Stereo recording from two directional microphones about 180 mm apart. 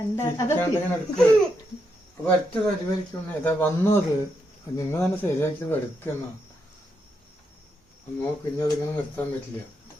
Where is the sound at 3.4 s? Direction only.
10° left (ahead or behind).